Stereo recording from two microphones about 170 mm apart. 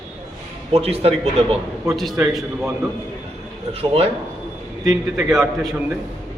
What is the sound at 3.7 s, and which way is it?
Speech, 35° right (ahead or behind).